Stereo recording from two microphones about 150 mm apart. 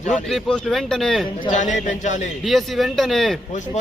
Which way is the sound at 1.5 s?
55° left (ahead or behind).